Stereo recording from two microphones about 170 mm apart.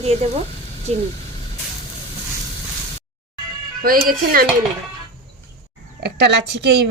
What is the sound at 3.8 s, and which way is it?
Speech, 60° right (ahead or behind).